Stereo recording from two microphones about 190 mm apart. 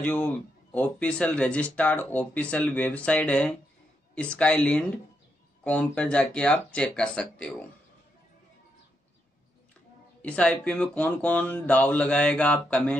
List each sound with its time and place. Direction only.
0.0 s speech: 10° left (ahead or behind)
10.2 s speech: 5° left (ahead or behind)